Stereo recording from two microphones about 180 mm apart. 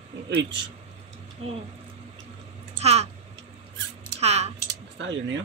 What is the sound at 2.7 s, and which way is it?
Speech, 35° right (ahead or behind).